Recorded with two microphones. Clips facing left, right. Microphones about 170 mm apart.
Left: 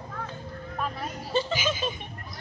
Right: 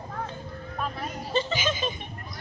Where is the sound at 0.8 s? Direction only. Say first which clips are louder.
Right 1 dB; 5° left (ahead or behind).